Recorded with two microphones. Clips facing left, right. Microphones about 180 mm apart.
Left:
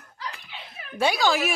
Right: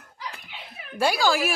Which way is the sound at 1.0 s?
5° right (ahead or behind).